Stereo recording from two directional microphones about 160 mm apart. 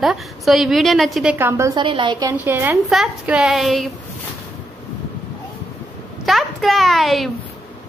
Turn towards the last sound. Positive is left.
turn(degrees=0)  # may be behind; listen again after turning